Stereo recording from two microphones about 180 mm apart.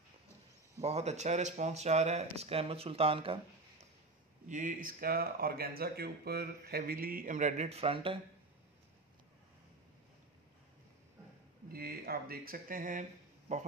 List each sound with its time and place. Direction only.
0.8 s speech: 35° right (ahead or behind)
4.5 s speech: 45° right (ahead or behind); by 8.2 s 30° right (ahead or behind)
11.7 s speech: 55° right (ahead or behind); by 13.6 s 40° right (ahead or behind)